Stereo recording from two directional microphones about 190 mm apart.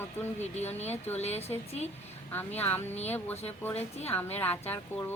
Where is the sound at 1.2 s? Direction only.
35° left (ahead or behind).